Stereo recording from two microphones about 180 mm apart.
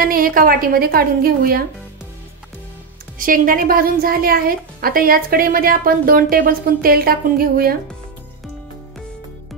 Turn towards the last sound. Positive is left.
turn(degrees=-55)  # may be behind; listen again after turning